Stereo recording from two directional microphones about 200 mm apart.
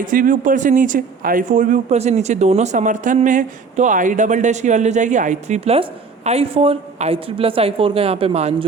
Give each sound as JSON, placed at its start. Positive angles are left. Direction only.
{"t": 0.0, "sound": "speech", "side_deg": -40}